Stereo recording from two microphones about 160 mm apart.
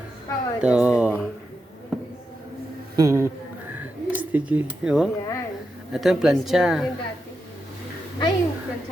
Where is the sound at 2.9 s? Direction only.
20° right (ahead or behind).